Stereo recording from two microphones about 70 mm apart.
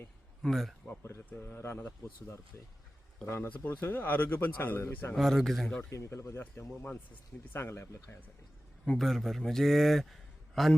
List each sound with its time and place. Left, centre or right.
0.4 s speech: centre
1.3 s speech: left
3.2 s speech: left
5.1 s speech: centre
5.9 s speech: left
7.5 s speech: left
8.8 s a man's voice: centre